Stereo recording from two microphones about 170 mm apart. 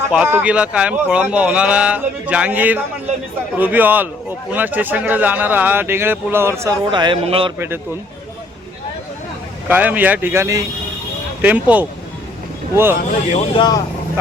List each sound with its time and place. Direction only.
0.1 s speech: 10° right (ahead or behind)
6.9 s speech: 30° right (ahead or behind)
9.6 s speech: 10° right (ahead or behind)
13.0 s speech: 50° left (ahead or behind)
13.6 s speech: 25° left (ahead or behind)